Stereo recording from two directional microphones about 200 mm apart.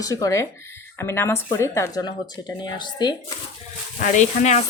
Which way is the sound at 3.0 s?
20° left (ahead or behind).